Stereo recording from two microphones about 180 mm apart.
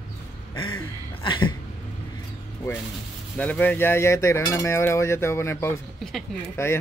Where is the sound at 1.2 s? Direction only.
25° left (ahead or behind).